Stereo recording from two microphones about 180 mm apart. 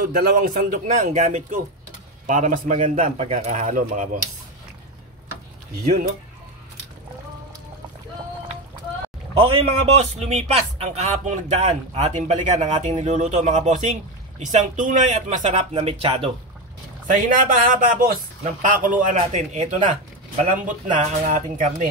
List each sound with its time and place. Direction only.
0.0 s a man's voice: 50° right (ahead or behind)
9.3 s a man's voice: 30° right (ahead or behind)
17.3 s a man's voice: 45° right (ahead or behind)